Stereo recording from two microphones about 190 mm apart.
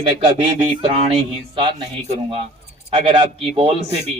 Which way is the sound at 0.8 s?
30° right (ahead or behind).